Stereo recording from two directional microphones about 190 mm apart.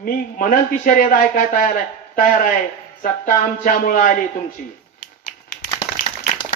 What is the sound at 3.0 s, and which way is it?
A man's voice, 45° left (ahead or behind).